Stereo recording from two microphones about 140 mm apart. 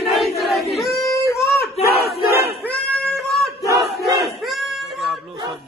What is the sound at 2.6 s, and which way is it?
Music, 5° left (ahead or behind).